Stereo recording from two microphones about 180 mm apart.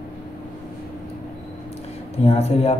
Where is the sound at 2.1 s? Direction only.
35° left (ahead or behind).